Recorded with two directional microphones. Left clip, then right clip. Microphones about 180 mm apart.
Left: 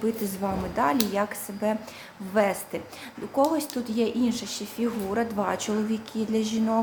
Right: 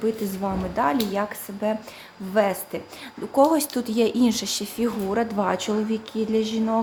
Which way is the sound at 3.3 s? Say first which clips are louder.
Right 5 dB; 30° right (ahead or behind).